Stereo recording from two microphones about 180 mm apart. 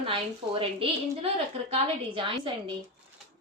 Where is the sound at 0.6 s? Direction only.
30° right (ahead or behind).